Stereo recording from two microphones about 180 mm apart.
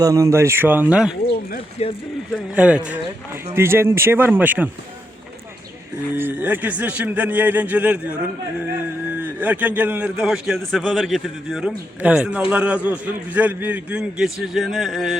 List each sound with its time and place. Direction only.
0.0 s a man's voice: 20° right (ahead or behind)
1.8 s speech: 35° left (ahead or behind)
2.6 s a man's voice: 5° right (ahead or behind)
6.1 s a man's voice: 10° right (ahead or behind)
9.2 s a man's voice: 10° right (ahead or behind)